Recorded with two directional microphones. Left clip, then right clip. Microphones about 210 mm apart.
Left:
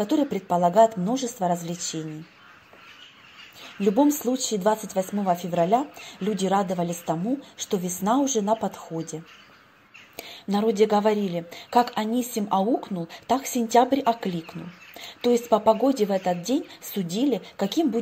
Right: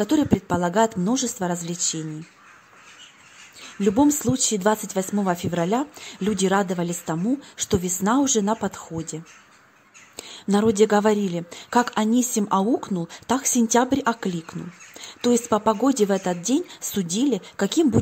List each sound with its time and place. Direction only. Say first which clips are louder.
0.0 s a woman's voice: right 3 dB; 25° right (ahead or behind)
3.8 s a woman's voice: right 1 dB; 25° right (ahead or behind)